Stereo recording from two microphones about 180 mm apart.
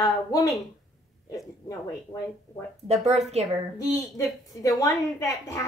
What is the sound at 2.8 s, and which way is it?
Speech, 35° right (ahead or behind).